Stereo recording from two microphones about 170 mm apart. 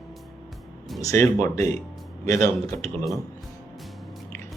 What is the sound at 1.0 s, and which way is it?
Speech, 20° left (ahead or behind).